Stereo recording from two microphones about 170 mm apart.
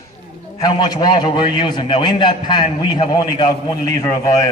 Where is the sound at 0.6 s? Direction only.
25° left (ahead or behind).